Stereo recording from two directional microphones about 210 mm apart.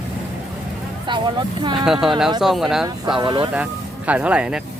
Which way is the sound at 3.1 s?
20° right (ahead or behind).